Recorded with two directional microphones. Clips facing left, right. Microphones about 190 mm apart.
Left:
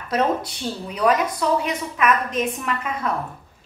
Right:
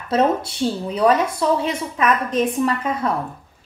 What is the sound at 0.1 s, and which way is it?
A woman's voice, 30° right (ahead or behind).